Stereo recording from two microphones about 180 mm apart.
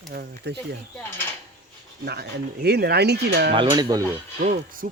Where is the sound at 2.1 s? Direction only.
65° right (ahead or behind).